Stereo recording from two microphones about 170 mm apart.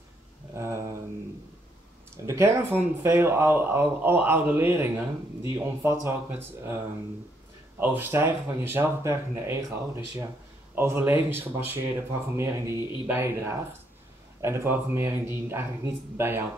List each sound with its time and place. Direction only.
0.6 s a sound: 15° right (ahead or behind)
2.2 s speech: 15° right (ahead or behind)
7.8 s speech: 10° right (ahead or behind)